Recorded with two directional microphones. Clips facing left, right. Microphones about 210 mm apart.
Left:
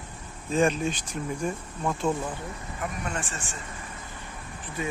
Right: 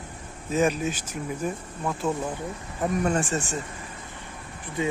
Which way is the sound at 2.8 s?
40° right (ahead or behind).